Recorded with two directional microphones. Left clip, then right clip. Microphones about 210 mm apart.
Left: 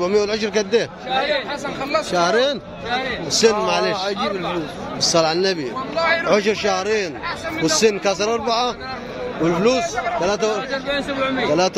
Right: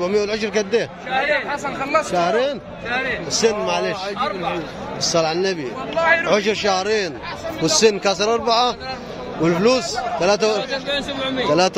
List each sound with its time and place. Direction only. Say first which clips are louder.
0.0 s a man's voice: left 1 dB; centre (ahead or behind)
5.0 s a man's voice: left 2 dB; centre (ahead or behind); by 10.6 s 15° right (ahead or behind)
10.7 s a man's voice: even; 40° right (ahead or behind)
11.4 s a man's voice: right 2 dB; 10° right (ahead or behind)